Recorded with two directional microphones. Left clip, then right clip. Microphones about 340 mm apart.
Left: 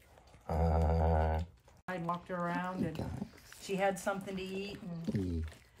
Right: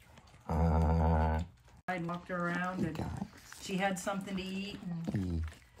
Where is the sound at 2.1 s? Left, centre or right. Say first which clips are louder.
Left 1 dB; left.